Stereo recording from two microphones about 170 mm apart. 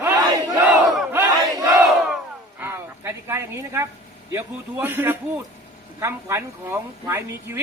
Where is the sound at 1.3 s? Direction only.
20° right (ahead or behind).